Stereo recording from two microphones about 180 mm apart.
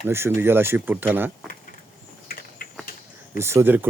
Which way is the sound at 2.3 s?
50° left (ahead or behind).